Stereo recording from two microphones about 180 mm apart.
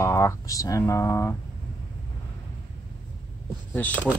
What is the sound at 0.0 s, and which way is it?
Speech, 15° left (ahead or behind).